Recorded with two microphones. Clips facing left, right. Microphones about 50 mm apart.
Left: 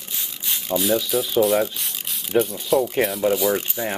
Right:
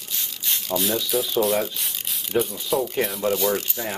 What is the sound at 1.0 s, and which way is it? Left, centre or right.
Speech, centre.